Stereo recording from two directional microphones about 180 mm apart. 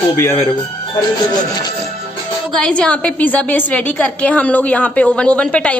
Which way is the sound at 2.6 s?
5° left (ahead or behind).